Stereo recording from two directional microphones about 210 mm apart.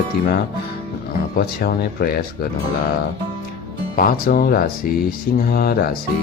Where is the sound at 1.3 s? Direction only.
45° left (ahead or behind).